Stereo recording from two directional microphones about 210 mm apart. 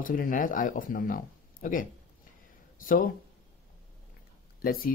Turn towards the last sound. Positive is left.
turn(degrees=45)  # may be behind; listen again after turning